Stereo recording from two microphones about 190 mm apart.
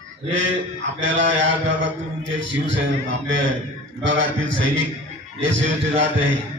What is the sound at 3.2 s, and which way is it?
A man's voice, 90° right.